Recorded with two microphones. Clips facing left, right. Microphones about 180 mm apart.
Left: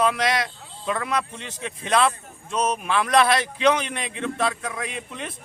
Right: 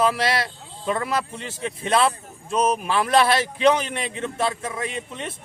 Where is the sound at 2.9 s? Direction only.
30° right (ahead or behind).